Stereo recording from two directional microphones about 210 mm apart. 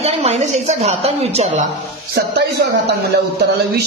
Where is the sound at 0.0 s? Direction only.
30° right (ahead or behind).